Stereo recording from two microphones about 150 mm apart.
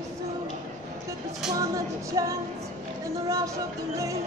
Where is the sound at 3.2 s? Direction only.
20° right (ahead or behind).